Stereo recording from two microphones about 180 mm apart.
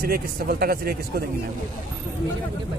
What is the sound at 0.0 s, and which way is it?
Speech, 55° right (ahead or behind).